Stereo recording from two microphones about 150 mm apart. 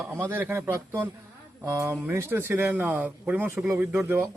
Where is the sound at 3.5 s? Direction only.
Centre (ahead or behind).